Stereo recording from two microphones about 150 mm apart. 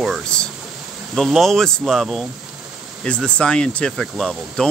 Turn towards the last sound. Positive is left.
turn(degrees=0)  # may be behind; listen again after turning